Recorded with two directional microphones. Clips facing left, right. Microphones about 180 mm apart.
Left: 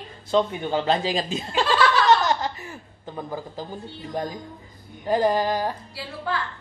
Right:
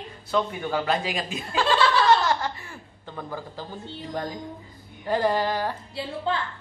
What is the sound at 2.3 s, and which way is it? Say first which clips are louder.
Chuckle: left 1 dB; 20° left (ahead or behind).